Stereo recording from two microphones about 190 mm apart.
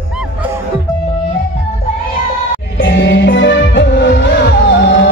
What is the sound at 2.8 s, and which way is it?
Music, 70° left (ahead or behind).